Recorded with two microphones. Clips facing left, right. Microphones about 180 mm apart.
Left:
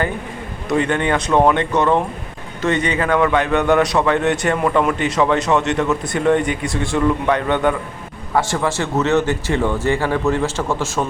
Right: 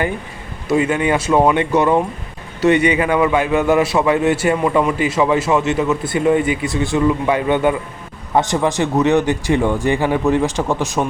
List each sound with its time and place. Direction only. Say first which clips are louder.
0.7 s a man's voice: right 2 dB; 5° right (ahead or behind)